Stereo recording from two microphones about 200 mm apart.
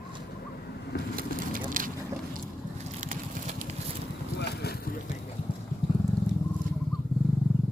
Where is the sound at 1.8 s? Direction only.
45° right (ahead or behind).